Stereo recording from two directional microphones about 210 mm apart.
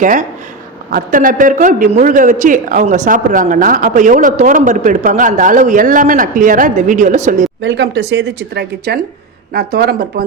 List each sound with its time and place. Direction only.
0.0 s a man's voice: 40° right (ahead or behind)
7.6 s speech: 60° right (ahead or behind)